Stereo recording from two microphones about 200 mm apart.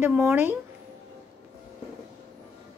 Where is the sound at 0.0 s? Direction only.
10° right (ahead or behind).